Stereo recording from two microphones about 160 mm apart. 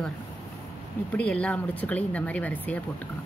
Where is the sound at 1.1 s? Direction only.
5° left (ahead or behind).